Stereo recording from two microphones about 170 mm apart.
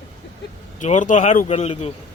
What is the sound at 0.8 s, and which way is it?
Speech, 45° left (ahead or behind).